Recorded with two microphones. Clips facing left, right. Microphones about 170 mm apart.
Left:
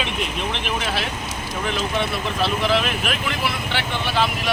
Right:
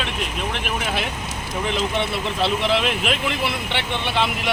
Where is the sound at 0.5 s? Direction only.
5° right (ahead or behind).